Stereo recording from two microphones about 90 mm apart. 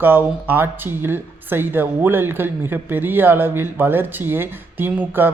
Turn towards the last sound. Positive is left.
turn(degrees=-25)  # may be behind; listen again after turning